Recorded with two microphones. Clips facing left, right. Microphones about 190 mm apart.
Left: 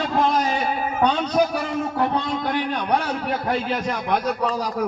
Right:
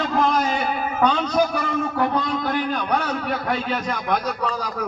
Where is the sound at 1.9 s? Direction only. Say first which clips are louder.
Even; 25° left (ahead or behind).